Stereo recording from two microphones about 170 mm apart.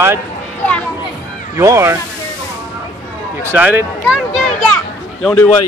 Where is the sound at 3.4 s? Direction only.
10° right (ahead or behind).